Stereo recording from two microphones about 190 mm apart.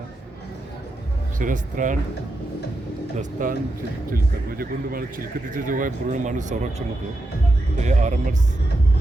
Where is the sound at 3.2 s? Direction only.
45° right (ahead or behind).